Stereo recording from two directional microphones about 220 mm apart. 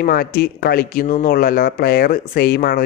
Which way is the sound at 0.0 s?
45° left (ahead or behind).